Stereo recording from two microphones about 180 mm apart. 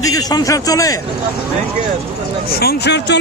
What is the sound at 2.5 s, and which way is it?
Speech, 60° left (ahead or behind).